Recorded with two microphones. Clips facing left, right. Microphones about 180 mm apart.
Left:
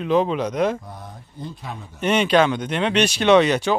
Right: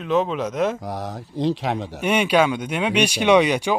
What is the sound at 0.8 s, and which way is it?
Speech, 90° right.